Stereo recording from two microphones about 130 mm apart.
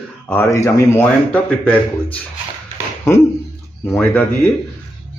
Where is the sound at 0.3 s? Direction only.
20° left (ahead or behind).